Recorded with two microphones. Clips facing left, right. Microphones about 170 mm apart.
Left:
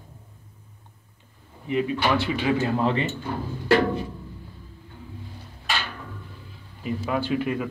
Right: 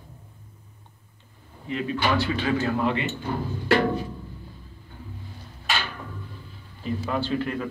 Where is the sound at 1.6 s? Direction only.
15° left (ahead or behind).